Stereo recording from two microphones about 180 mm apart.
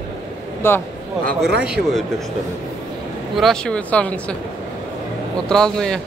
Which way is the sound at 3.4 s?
5° left (ahead or behind).